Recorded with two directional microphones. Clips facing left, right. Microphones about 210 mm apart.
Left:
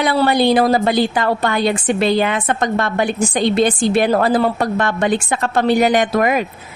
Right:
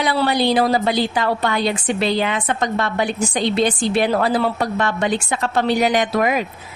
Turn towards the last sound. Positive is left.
turn(degrees=50)  # may be behind; listen again after turning